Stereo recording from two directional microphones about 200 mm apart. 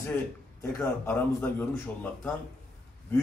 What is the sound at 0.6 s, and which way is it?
A man's voice, 5° left (ahead or behind).